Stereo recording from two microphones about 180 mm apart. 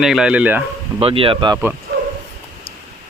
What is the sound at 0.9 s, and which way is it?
Speech, 30° right (ahead or behind).